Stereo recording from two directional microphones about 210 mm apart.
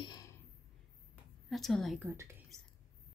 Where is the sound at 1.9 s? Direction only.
10° right (ahead or behind).